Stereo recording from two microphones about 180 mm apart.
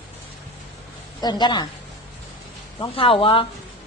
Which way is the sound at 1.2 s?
25° left (ahead or behind).